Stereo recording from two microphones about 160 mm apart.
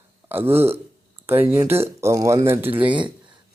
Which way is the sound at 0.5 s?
15° right (ahead or behind).